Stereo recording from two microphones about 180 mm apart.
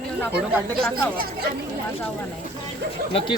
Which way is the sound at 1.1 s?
55° right (ahead or behind).